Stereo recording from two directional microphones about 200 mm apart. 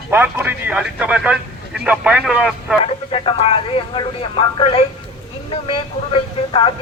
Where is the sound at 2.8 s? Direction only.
30° left (ahead or behind).